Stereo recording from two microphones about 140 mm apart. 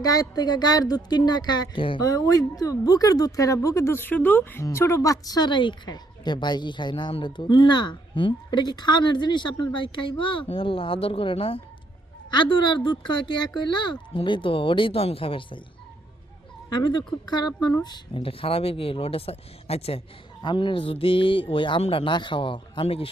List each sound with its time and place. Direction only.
0.0 s a woman's voice: 25° left (ahead or behind)
2.0 s speech: 25° left (ahead or behind)
16.6 s speech: 30° left (ahead or behind)
20.4 s speech: 35° left (ahead or behind)